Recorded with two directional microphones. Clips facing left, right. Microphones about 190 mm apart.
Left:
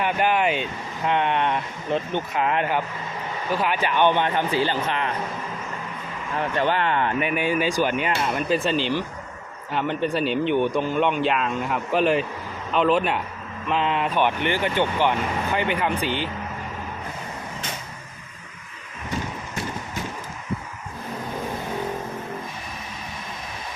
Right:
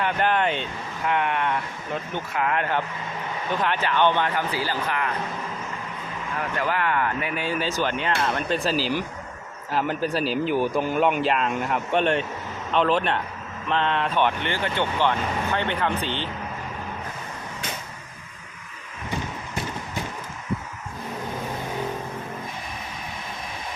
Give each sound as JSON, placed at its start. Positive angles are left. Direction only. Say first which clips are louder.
{"t": 0.0, "sound": "speech", "louder": "left 1 dB", "side_deg": 10}
{"t": 1.0, "sound": "speech", "louder": "left 2 dB", "side_deg": 25}
{"t": 3.5, "sound": "speech", "louder": "left 1 dB", "side_deg": 10}
{"t": 6.4, "sound": "speech", "louder": "left 3 dB", "side_deg": 30}